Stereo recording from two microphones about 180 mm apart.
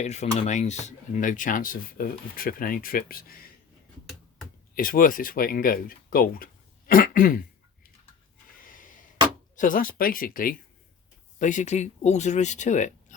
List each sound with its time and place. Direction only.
0.0 s speech: 40° left (ahead or behind); by 3.5 s 55° left (ahead or behind)
4.7 s speech: 50° left (ahead or behind)
8.6 s a sound: 50° left (ahead or behind)
9.6 s speech: 50° left (ahead or behind)